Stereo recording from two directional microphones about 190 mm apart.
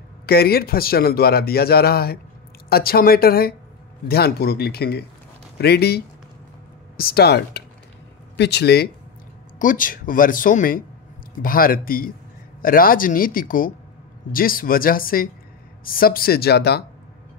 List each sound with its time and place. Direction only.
0.3 s speech: 55° left (ahead or behind)
9.6 s speech: 45° left (ahead or behind)